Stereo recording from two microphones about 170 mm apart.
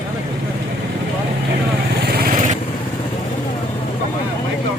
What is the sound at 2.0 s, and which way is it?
Vehicle, 65° right (ahead or behind).